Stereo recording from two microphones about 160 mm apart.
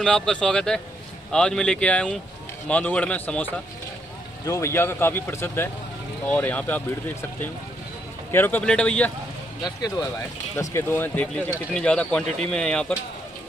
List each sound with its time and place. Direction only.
0.0 s speech: 5° left (ahead or behind)
9.8 s speech: 25° left (ahead or behind); by 12.9 s 5° left (ahead or behind)